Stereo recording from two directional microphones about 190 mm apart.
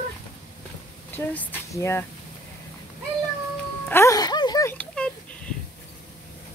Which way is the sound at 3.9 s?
15° left (ahead or behind).